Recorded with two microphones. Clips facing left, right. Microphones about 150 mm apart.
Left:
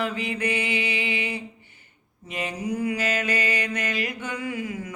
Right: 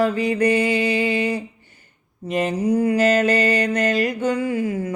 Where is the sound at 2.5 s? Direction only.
35° right (ahead or behind).